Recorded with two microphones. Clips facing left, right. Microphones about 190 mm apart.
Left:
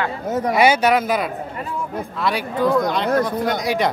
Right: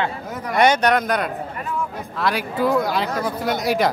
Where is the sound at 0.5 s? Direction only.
5° left (ahead or behind).